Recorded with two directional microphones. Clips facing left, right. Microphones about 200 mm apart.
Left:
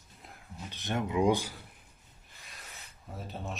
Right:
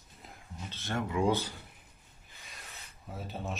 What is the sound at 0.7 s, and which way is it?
Speech, 20° left (ahead or behind).